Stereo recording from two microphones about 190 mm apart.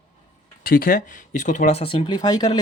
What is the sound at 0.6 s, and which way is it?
Speech, 50° left (ahead or behind).